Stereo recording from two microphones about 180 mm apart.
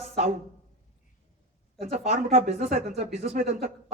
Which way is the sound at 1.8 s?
40° right (ahead or behind).